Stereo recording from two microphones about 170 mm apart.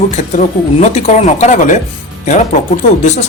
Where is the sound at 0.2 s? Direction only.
40° left (ahead or behind).